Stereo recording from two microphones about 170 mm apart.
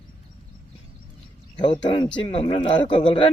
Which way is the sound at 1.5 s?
30° left (ahead or behind).